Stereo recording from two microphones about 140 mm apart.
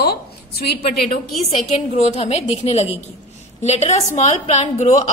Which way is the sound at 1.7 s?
50° left (ahead or behind).